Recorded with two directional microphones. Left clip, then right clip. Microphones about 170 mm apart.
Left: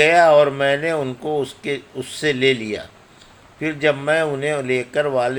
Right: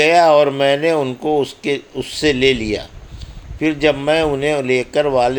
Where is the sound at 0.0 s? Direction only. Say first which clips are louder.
Right 1 dB; 25° right (ahead or behind).